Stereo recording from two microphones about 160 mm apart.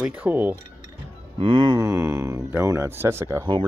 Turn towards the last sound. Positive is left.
turn(degrees=-15)  # may be behind; listen again after turning